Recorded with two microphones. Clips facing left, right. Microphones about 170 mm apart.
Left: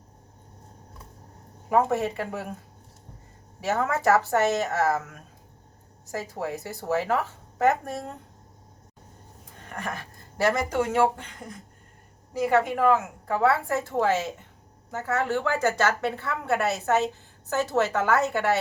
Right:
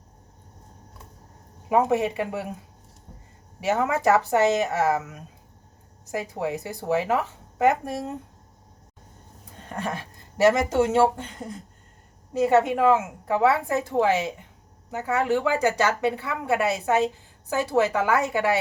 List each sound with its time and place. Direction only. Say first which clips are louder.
1.7 s a woman's voice: right 2 dB; 15° right (ahead or behind)
3.6 s a woman's voice: right 2 dB; 15° right (ahead or behind)
9.6 s a woman's voice: right 4 dB; 25° right (ahead or behind)